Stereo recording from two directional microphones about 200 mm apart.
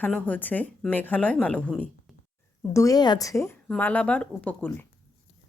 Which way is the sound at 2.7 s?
15° left (ahead or behind).